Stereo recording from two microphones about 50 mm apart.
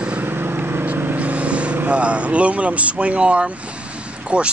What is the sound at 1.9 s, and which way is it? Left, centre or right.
Speech, right.